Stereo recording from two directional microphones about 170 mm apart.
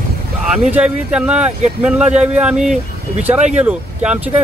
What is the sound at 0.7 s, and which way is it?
Speech, 5° right (ahead or behind).